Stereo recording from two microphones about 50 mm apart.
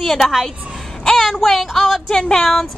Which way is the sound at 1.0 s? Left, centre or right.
Centre.